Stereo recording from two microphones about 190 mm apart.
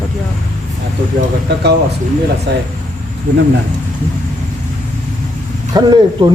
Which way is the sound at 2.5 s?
60° right (ahead or behind).